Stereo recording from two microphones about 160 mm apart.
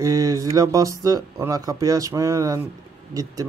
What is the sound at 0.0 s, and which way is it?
Speech, 20° right (ahead or behind).